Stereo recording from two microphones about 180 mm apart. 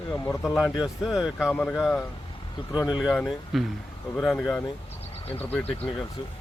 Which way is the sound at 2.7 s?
20° left (ahead or behind).